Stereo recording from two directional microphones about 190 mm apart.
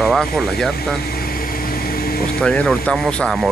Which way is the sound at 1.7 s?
50° left (ahead or behind).